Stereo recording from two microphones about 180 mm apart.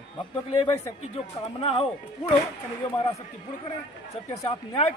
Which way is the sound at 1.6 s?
30° left (ahead or behind).